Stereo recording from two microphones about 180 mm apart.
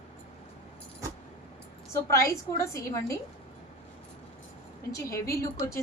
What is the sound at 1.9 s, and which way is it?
A woman's voice, 15° left (ahead or behind).